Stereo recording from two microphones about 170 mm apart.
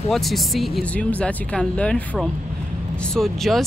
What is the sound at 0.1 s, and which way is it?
Speech, centre (ahead or behind).